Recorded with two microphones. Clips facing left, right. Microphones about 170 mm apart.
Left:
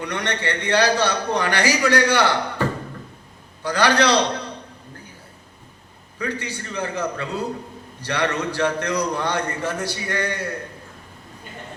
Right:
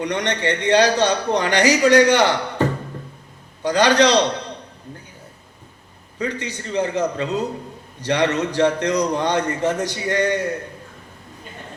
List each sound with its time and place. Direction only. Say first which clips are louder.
0.0 s a man's voice: right 4 dB; 20° right (ahead or behind)
6.1 s a man's voice: right 2 dB; 20° right (ahead or behind)